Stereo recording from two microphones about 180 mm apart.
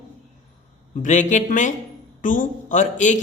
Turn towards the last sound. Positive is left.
turn(degrees=45)  # may be behind; listen again after turning